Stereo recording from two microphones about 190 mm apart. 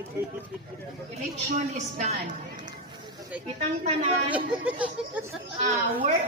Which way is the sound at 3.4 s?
35° right (ahead or behind).